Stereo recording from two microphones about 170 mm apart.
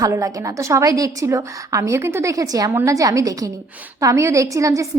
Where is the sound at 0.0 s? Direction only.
20° right (ahead or behind).